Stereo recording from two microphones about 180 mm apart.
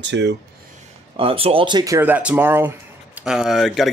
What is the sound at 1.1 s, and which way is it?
Speech, 30° right (ahead or behind).